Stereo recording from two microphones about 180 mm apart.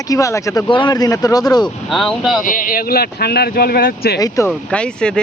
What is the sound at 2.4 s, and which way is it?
Speech, 50° left (ahead or behind).